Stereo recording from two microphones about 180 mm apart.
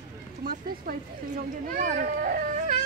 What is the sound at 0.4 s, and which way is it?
Speech, 55° right (ahead or behind).